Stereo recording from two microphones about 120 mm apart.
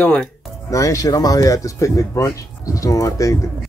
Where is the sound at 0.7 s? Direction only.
25° left (ahead or behind).